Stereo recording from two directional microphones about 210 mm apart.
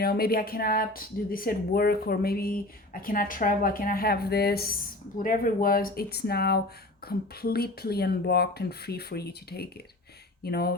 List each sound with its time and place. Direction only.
0.0 s speech: 50° left (ahead or behind)